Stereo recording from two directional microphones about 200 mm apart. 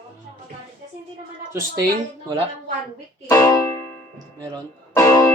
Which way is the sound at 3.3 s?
15° left (ahead or behind).